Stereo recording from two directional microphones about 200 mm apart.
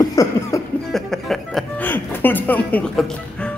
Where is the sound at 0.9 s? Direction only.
Centre (ahead or behind).